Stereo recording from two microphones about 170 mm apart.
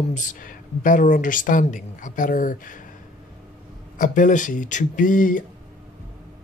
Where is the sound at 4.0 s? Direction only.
50° left (ahead or behind).